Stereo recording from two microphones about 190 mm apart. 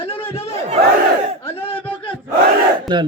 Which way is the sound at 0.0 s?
30° left (ahead or behind).